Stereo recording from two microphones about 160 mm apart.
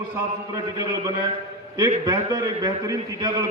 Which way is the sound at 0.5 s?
20° right (ahead or behind).